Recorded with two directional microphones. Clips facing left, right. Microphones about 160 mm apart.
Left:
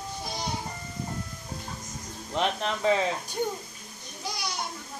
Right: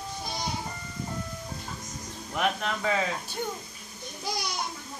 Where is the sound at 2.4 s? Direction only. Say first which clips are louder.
Left 1 dB; 25° left (ahead or behind).